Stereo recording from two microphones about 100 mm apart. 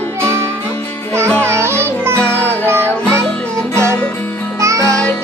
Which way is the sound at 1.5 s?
25° right (ahead or behind).